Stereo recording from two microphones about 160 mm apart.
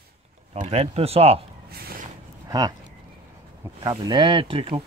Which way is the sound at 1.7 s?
70° right (ahead or behind).